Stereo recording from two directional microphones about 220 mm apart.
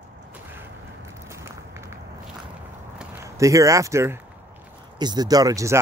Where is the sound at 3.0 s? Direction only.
15° right (ahead or behind).